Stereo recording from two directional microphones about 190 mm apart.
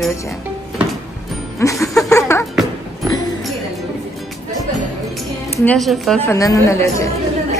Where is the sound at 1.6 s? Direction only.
15° left (ahead or behind).